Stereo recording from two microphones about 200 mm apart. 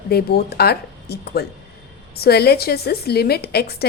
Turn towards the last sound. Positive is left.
turn(degrees=50)  # may be behind; listen again after turning